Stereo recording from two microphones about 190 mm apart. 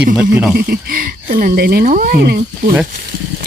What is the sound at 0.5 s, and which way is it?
Speech, 50° right (ahead or behind).